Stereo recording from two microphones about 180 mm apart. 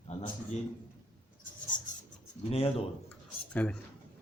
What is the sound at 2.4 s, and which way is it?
Speech, 35° left (ahead or behind).